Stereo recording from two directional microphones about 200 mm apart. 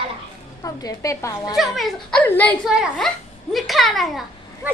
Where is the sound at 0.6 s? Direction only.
20° left (ahead or behind).